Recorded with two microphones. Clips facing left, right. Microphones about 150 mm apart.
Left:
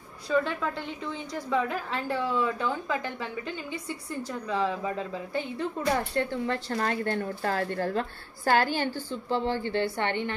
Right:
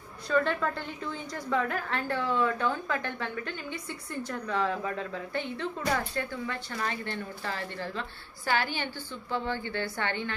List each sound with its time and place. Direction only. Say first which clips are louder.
0.3 s a woman's voice: even; 5° left (ahead or behind)
5.8 s speech: left 4 dB; 25° left (ahead or behind)
6.7 s a woman's voice: left 6 dB; 45° left (ahead or behind); by 10.3 s 20° left (ahead or behind)